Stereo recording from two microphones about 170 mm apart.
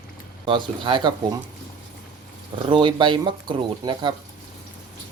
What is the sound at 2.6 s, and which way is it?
Speech, 30° right (ahead or behind).